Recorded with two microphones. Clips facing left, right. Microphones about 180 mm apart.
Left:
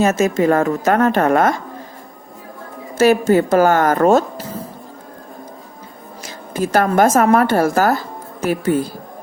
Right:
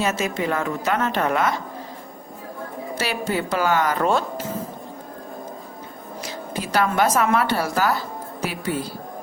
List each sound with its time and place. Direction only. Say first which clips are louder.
0.0 s a woman's voice: left 9 dB; 45° left (ahead or behind)
3.0 s a woman's voice: left 13 dB; 45° left (ahead or behind)
6.2 s a woman's voice: left 8 dB; 45° left (ahead or behind)